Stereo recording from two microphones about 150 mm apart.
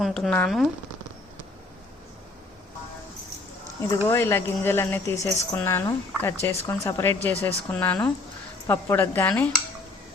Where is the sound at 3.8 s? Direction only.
20° left (ahead or behind).